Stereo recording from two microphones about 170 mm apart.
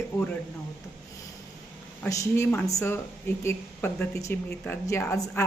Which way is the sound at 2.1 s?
15° left (ahead or behind).